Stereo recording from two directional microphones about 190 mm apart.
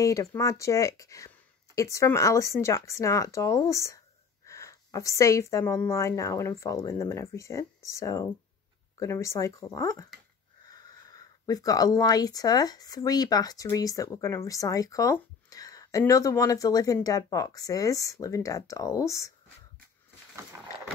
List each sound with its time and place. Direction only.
0.0 s speech: 15° left (ahead or behind)